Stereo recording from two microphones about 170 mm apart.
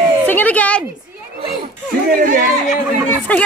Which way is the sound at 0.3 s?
10° left (ahead or behind).